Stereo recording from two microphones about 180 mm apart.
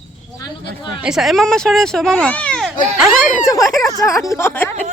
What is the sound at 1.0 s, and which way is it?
A woman's voice, centre (ahead or behind).